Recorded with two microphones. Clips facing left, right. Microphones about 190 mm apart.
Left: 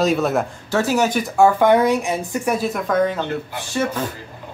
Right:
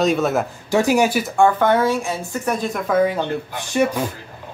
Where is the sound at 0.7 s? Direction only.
15° right (ahead or behind).